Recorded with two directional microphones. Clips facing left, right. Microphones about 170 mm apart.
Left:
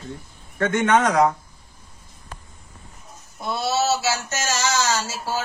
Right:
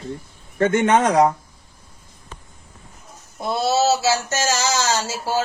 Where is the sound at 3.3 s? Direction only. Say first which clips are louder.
Right 4 dB; 25° right (ahead or behind).